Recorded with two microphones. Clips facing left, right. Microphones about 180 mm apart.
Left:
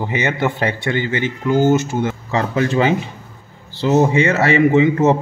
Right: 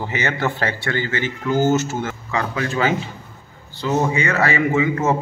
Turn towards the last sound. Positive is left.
turn(degrees=20)  # may be behind; listen again after turning